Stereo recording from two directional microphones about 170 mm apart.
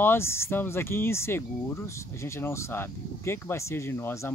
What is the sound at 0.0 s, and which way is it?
Speech, 15° left (ahead or behind).